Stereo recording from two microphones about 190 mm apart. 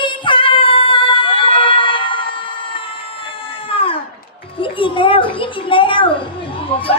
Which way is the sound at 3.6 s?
30° left (ahead or behind).